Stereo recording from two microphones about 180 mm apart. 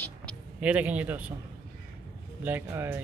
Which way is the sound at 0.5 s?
5° right (ahead or behind).